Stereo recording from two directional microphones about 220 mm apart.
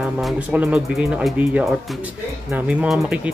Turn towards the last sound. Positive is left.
turn(degrees=-5)  # may be behind; listen again after turning